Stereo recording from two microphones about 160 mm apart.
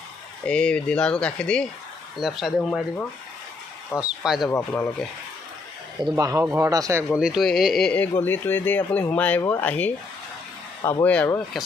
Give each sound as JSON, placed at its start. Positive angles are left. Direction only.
{"t": 0.5, "sound": "speech", "side_deg": 5}
{"t": 4.0, "sound": "speech", "side_deg": -5}
{"t": 4.5, "sound": "speech", "side_deg": 15}
{"t": 6.1, "sound": "speech", "side_deg": -20}
{"t": 7.1, "sound": "speech", "side_deg": -5}